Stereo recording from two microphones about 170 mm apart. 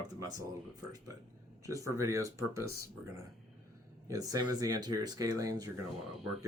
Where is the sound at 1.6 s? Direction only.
20° right (ahead or behind).